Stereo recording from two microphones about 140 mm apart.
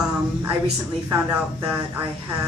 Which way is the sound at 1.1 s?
25° right (ahead or behind).